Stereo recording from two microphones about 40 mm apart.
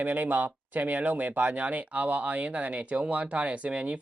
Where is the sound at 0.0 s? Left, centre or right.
Right.